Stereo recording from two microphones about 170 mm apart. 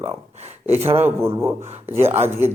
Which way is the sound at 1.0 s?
15° right (ahead or behind).